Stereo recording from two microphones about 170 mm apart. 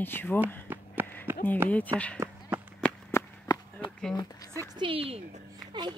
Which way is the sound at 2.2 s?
15° right (ahead or behind).